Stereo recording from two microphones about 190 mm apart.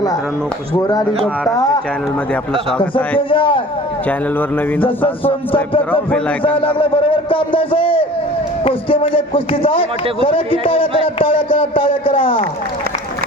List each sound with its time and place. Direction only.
0.8 s speech: 20° left (ahead or behind)
3.2 s speech: 25° left (ahead or behind)
4.8 s speech: 30° left (ahead or behind)
5.9 s a man's voice: 10° left (ahead or behind)
6.6 s speech: 30° left (ahead or behind)